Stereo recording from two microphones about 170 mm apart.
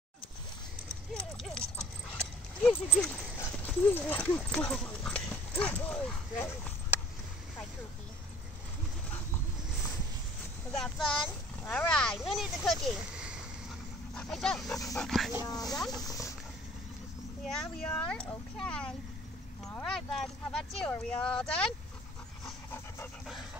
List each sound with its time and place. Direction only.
1.1 s clip-clop: 5° left (ahead or behind)
2.9 s speech: 5° left (ahead or behind)
10.7 s speech: centre (ahead or behind)
16.1 s speech: 20° left (ahead or behind)
17.5 s speech: 5° left (ahead or behind)